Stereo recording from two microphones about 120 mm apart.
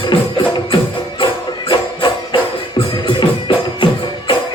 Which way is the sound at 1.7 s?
45° left (ahead or behind).